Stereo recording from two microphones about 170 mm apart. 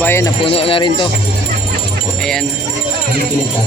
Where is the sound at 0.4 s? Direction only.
35° left (ahead or behind).